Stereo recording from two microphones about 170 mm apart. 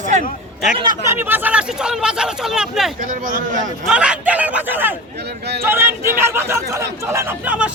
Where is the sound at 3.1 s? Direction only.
55° right (ahead or behind).